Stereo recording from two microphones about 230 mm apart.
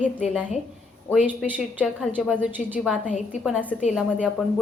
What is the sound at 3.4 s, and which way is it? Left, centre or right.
Speech, centre.